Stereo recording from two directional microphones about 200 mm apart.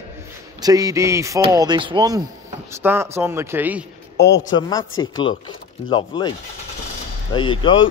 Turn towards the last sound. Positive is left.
turn(degrees=25)  # may be behind; listen again after turning